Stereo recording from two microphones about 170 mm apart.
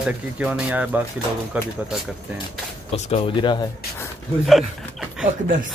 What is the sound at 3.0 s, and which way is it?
Speech, 30° left (ahead or behind).